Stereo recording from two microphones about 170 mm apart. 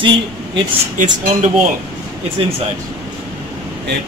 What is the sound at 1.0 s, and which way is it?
Speech, 50° right (ahead or behind).